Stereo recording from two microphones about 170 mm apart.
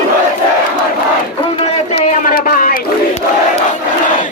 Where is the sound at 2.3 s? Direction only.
55° left (ahead or behind).